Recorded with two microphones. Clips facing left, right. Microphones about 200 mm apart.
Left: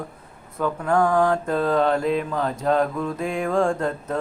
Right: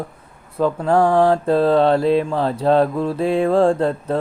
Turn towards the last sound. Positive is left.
turn(degrees=-35)  # may be behind; listen again after turning